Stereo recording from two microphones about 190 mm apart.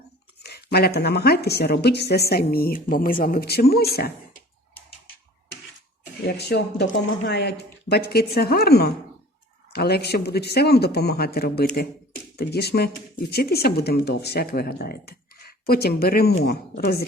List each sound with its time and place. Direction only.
0.4 s speech: 60° left (ahead or behind)
6.2 s speech: 60° left (ahead or behind)